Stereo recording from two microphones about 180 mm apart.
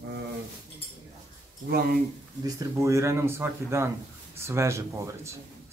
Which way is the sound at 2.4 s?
15° right (ahead or behind).